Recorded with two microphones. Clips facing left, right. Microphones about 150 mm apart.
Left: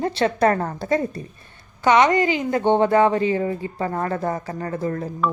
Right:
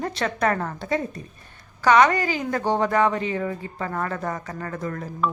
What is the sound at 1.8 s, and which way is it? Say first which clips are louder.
A woman's voice: left 1 dB; 20° left (ahead or behind).